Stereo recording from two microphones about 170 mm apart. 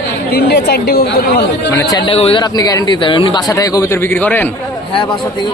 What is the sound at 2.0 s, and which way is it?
Speech, 35° left (ahead or behind).